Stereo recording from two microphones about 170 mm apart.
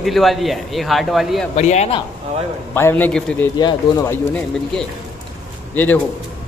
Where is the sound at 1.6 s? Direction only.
40° left (ahead or behind).